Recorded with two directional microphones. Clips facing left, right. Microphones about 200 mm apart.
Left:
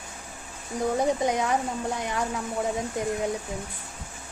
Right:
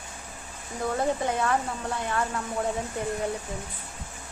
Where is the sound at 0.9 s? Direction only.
15° left (ahead or behind).